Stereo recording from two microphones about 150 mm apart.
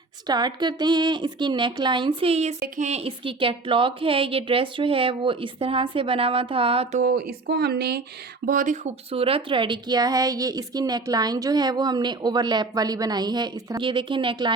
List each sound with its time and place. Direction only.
0.3 s a woman's voice: 30° right (ahead or behind)
7.0 s speech: 90° right
8.4 s speech: 60° right (ahead or behind); by 14.5 s 35° right (ahead or behind)